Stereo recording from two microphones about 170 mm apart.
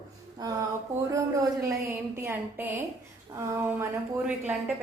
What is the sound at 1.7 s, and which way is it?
A woman's voice, 15° right (ahead or behind).